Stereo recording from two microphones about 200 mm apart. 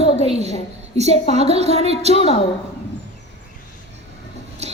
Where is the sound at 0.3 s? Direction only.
30° right (ahead or behind).